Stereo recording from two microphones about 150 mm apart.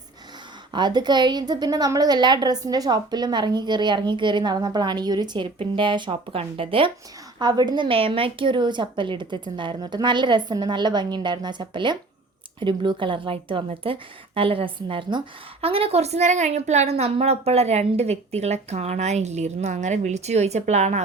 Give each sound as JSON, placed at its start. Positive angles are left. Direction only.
{"t": 0.7, "sound": "a woman's voice", "side_deg": -30}